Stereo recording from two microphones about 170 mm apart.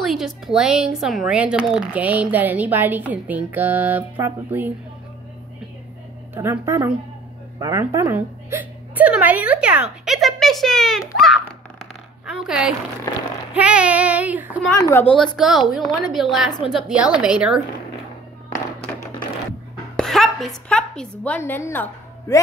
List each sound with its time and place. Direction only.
0.0 s speech: centre (ahead or behind)
6.3 s a woman's voice: 15° right (ahead or behind)
14.8 s a woman's voice: 15° left (ahead or behind)
15.3 s a woman's voice: centre (ahead or behind)
20.0 s a woman's voice: centre (ahead or behind)